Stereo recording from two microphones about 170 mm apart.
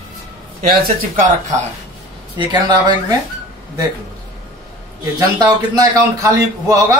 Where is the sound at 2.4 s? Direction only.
25° right (ahead or behind).